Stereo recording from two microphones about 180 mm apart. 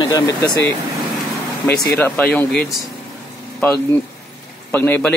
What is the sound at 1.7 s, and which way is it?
A man's voice, 10° left (ahead or behind).